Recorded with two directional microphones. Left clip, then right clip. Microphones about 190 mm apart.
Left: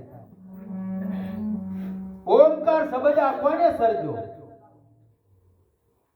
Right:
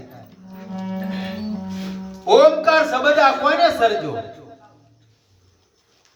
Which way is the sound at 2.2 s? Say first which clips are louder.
Right 4 dB; 15° right (ahead or behind).